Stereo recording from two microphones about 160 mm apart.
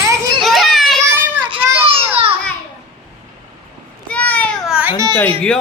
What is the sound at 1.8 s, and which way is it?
Children playing, 35° right (ahead or behind).